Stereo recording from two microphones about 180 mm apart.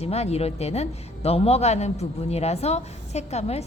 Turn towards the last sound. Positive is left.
turn(degrees=35)  # may be behind; listen again after turning